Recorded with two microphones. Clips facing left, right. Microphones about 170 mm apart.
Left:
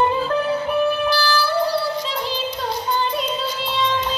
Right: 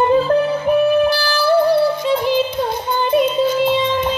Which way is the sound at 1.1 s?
55° right (ahead or behind).